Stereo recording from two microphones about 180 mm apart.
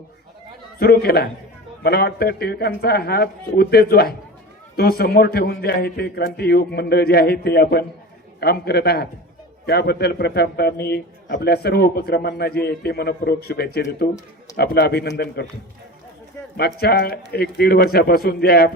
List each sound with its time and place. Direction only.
0.8 s a man's voice: 60° left (ahead or behind)
16.6 s a man's voice: 65° left (ahead or behind)